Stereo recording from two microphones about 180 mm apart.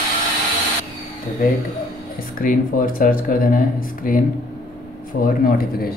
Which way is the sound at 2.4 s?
50° left (ahead or behind).